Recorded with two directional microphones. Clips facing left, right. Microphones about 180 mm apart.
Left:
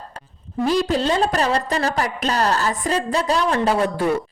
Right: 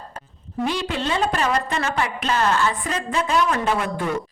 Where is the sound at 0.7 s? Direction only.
40° left (ahead or behind).